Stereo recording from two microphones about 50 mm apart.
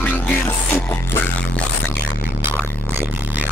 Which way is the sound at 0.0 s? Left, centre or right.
Left.